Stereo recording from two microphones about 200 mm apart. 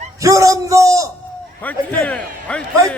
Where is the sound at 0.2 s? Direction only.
15° right (ahead or behind).